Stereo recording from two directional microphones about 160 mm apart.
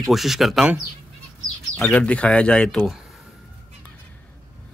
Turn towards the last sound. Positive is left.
turn(degrees=0)  # may be behind; listen again after turning